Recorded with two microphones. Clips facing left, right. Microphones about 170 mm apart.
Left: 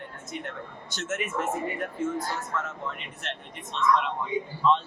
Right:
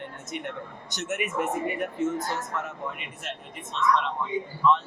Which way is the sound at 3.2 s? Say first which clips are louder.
Even; 5° right (ahead or behind).